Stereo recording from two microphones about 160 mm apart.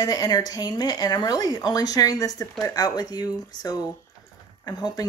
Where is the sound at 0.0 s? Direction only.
25° left (ahead or behind).